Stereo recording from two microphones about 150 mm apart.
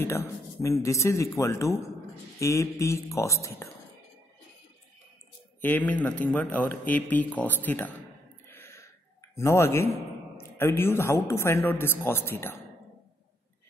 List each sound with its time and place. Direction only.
0.0 s speech: 20° left (ahead or behind)
5.6 s speech: 10° left (ahead or behind)
8.5 s gasp: 15° left (ahead or behind)
9.3 s speech: 20° left (ahead or behind)